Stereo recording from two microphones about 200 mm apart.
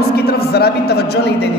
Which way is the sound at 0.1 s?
50° left (ahead or behind).